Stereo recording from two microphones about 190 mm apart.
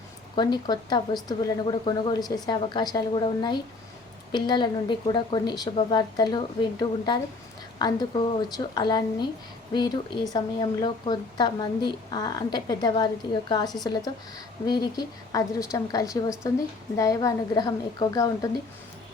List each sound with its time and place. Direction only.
0.3 s a woman's voice: 20° left (ahead or behind)